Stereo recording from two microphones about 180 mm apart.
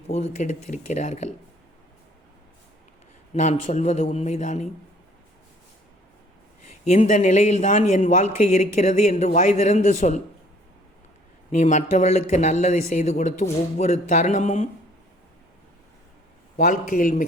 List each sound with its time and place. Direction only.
0.1 s a man's voice: 40° left (ahead or behind)
3.3 s a man's voice: 40° left (ahead or behind)
6.7 s a man's voice: 40° left (ahead or behind)
11.5 s a man's voice: 40° left (ahead or behind)
16.6 s a man's voice: 45° left (ahead or behind)